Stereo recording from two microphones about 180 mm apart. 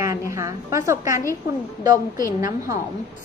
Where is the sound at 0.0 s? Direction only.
15° right (ahead or behind).